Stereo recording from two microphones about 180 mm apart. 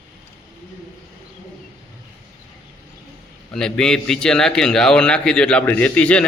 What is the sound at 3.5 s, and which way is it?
A man's voice, 5° left (ahead or behind).